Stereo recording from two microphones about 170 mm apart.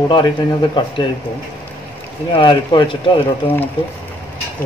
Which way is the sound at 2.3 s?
30° left (ahead or behind).